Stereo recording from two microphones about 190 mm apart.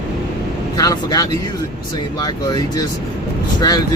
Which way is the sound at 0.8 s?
20° left (ahead or behind).